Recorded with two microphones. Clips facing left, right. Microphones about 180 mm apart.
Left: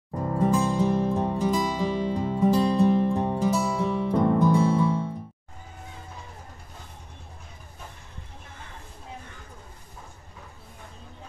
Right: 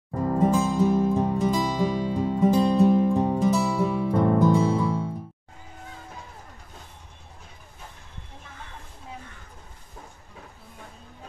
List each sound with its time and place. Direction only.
0.5 s music: centre (ahead or behind)